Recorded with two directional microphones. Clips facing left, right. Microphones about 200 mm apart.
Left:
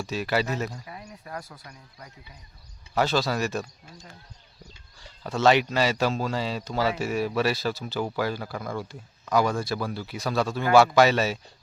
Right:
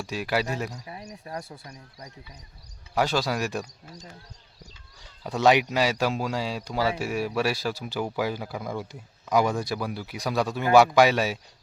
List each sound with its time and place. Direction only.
0.0 s speech: 10° right (ahead or behind)
1.3 s speech: 30° right (ahead or behind)
2.9 s speech: 10° right (ahead or behind)
5.2 s speech: 15° right (ahead or behind)